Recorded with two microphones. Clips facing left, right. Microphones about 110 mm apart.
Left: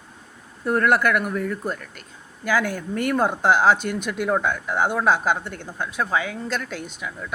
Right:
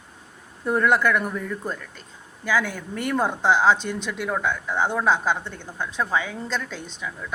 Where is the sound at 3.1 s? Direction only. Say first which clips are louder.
Left 1 dB; 10° left (ahead or behind).